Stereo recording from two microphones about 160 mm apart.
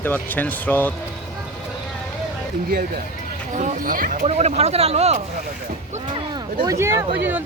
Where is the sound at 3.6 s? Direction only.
55° right (ahead or behind).